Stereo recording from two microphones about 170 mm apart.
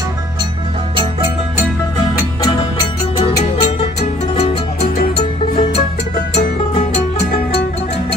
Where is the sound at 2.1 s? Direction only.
25° left (ahead or behind).